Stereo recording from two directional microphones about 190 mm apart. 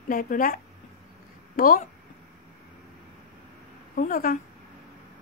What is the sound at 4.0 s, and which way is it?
Speech, 45° left (ahead or behind).